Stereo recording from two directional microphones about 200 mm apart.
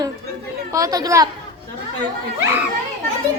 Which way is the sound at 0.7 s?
20° right (ahead or behind).